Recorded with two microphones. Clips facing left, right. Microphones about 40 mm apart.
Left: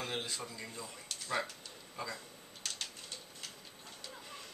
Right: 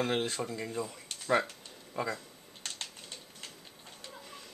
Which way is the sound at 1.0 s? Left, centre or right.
Right.